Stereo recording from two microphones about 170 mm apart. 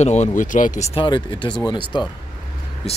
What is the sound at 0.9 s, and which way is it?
Speech, 30° left (ahead or behind).